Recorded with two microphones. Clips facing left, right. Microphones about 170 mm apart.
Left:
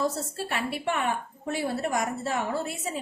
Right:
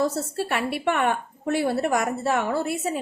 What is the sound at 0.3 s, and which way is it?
A woman's voice, 65° right (ahead or behind).